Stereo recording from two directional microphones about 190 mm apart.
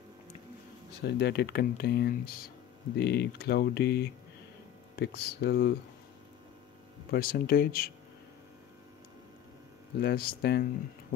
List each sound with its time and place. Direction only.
0.9 s speech: 60° left (ahead or behind)
7.1 s speech: 50° left (ahead or behind)
10.0 s speech: 55° left (ahead or behind)